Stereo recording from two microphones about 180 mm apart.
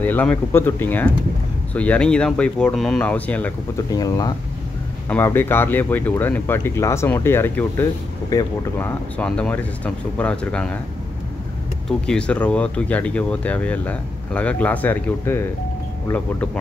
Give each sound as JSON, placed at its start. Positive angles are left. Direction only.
{"t": 0.0, "sound": "speech", "side_deg": 10}
{"t": 3.9, "sound": "speech", "side_deg": 20}
{"t": 12.1, "sound": "speech", "side_deg": 5}